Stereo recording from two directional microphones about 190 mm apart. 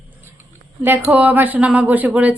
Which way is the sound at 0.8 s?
10° right (ahead or behind).